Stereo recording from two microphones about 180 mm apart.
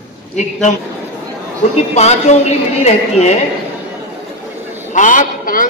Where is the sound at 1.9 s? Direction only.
40° left (ahead or behind).